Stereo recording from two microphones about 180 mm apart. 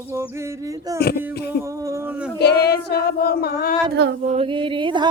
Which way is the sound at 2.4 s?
65° left (ahead or behind).